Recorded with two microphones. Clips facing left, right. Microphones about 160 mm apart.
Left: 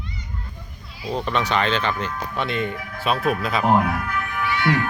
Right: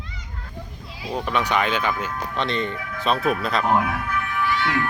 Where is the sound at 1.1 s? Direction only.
10° right (ahead or behind).